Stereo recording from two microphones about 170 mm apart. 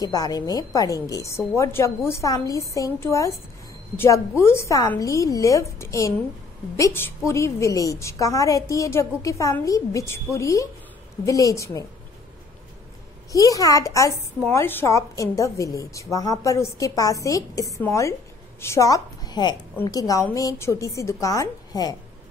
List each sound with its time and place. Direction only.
0.0 s a woman's voice: 20° left (ahead or behind)
13.3 s a woman's voice: 20° left (ahead or behind)